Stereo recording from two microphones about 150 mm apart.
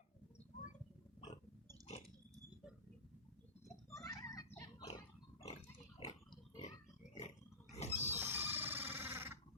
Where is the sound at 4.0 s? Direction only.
25° left (ahead or behind).